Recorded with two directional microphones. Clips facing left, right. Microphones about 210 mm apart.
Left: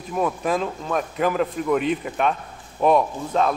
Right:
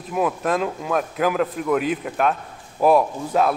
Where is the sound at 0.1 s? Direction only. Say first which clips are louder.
Right 1 dB; centre (ahead or behind).